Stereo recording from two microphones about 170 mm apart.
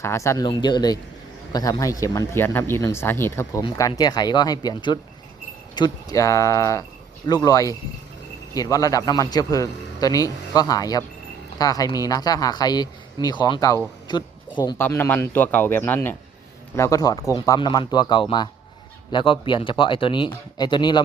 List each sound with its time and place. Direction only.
0.0 s speech: 15° left (ahead or behind)
14.8 s speech: 10° left (ahead or behind)